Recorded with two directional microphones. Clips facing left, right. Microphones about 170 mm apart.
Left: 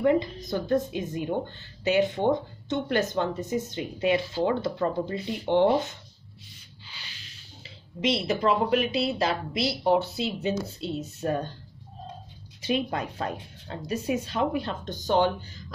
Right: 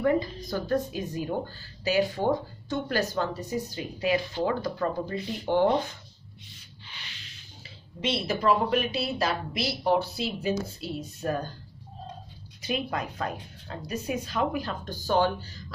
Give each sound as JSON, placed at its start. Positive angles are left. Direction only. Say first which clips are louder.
{"t": 0.0, "sound": "a woman's voice", "louder": "left 2 dB", "side_deg": 20}
{"t": 7.6, "sound": "a woman's voice", "louder": "left 4 dB", "side_deg": 25}
{"t": 12.6, "sound": "a woman's voice", "louder": "left 3 dB", "side_deg": 30}